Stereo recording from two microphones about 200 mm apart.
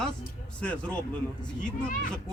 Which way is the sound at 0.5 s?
5° left (ahead or behind).